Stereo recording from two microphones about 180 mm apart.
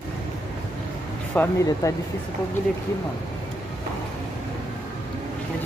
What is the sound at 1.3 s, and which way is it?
Speech, 15° left (ahead or behind).